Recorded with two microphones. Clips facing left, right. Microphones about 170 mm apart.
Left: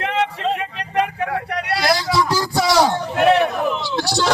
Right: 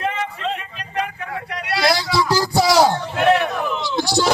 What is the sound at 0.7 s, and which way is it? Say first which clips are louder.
Vehicle: left 5 dB; 70° left (ahead or behind).